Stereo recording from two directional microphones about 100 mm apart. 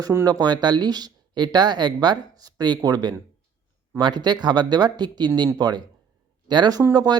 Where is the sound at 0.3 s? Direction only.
45° right (ahead or behind).